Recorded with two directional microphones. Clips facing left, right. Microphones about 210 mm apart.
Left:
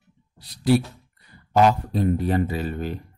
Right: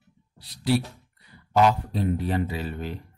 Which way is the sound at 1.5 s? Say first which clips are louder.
Left 2 dB; 45° left (ahead or behind).